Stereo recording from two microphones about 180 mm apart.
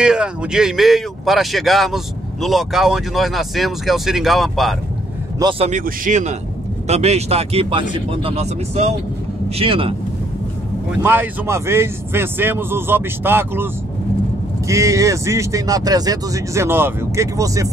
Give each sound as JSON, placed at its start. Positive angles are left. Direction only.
{"t": 0.0, "sound": "speech", "side_deg": -5}
{"t": 5.4, "sound": "speech", "side_deg": -30}
{"t": 5.7, "sound": "speech", "side_deg": -45}
{"t": 11.0, "sound": "speech", "side_deg": -10}
{"t": 14.7, "sound": "speech", "side_deg": -15}